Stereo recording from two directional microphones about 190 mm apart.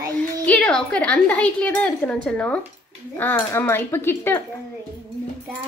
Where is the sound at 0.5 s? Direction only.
5° left (ahead or behind).